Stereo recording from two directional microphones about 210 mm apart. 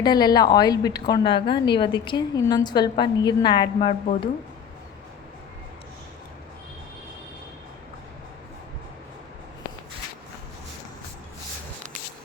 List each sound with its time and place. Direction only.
0.0 s a woman's voice: 20° left (ahead or behind)